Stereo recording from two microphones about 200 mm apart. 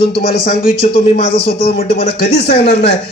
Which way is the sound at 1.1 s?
30° left (ahead or behind).